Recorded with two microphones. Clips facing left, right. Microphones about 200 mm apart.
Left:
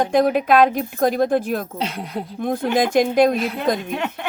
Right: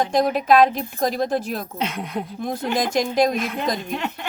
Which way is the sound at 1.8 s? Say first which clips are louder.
Even; 35° left (ahead or behind).